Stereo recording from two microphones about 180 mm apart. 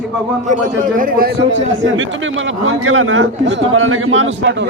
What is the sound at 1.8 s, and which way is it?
A man's voice, 90° right.